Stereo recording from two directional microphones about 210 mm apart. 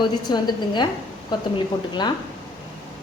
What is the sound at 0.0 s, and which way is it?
A woman's voice, 20° left (ahead or behind).